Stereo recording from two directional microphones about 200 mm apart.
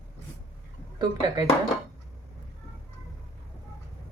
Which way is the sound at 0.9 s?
20° right (ahead or behind).